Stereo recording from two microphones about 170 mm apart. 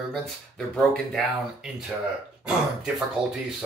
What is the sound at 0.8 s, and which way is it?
Speech, centre (ahead or behind).